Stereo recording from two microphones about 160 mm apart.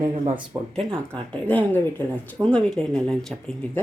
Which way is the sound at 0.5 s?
25° right (ahead or behind).